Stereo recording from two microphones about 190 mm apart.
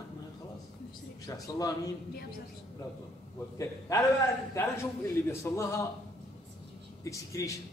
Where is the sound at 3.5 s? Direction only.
15° left (ahead or behind).